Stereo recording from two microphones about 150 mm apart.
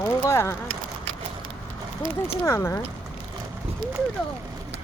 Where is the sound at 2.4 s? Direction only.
20° left (ahead or behind).